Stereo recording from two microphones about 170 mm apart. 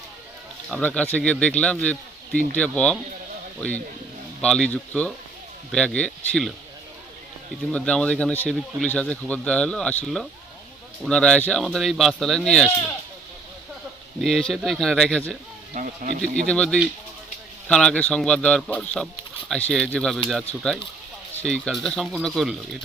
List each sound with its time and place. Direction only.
0.7 s speech: 10° left (ahead or behind)
4.4 s speech: 5° left (ahead or behind)
7.7 s speech: 5° left (ahead or behind)
14.2 s speech: centre (ahead or behind)
15.7 s speech: 50° right (ahead or behind)
16.3 s speech: 5° left (ahead or behind)